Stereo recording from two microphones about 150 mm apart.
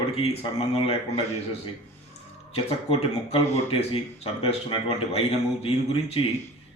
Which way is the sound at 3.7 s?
40° left (ahead or behind).